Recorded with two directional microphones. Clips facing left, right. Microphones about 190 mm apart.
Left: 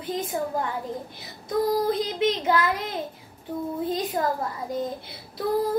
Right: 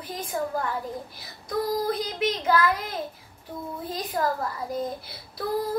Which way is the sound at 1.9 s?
25° left (ahead or behind).